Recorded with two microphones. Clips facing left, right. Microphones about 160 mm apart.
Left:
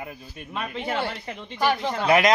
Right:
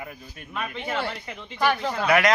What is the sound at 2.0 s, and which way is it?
Speech, 25° left (ahead or behind).